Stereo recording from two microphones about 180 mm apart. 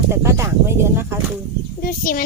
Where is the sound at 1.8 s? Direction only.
50° left (ahead or behind).